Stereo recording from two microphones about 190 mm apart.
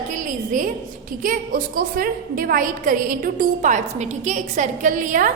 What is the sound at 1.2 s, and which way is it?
A woman's voice, 45° right (ahead or behind).